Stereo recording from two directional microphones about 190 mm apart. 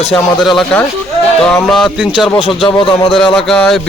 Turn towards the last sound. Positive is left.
turn(degrees=0)  # may be behind; listen again after turning